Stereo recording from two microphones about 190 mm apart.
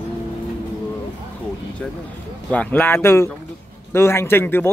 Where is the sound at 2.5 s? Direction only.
10° left (ahead or behind).